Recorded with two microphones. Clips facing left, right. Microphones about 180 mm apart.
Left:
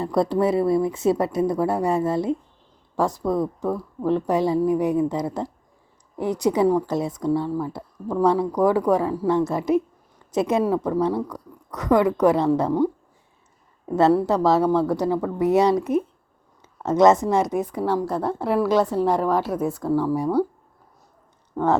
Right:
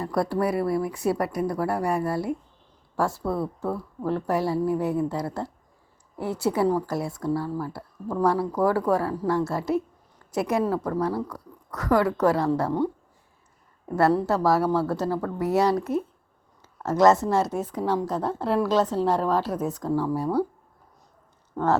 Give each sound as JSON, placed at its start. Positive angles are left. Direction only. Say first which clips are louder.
{"t": 0.0, "sound": "a woman's voice", "louder": "left 4 dB", "side_deg": 20}
{"t": 21.5, "sound": "speech", "louder": "left 2 dB", "side_deg": 15}